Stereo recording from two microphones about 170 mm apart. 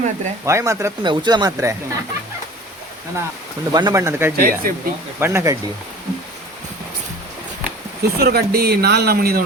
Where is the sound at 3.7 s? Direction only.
20° right (ahead or behind).